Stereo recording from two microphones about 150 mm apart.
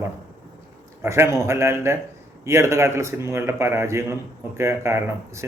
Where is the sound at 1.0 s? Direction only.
20° right (ahead or behind).